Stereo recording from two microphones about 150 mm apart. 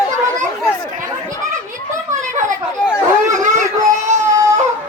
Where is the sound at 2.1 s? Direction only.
55° right (ahead or behind).